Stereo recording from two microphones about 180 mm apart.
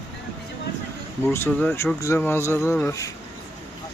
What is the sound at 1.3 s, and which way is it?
Speech, 10° left (ahead or behind).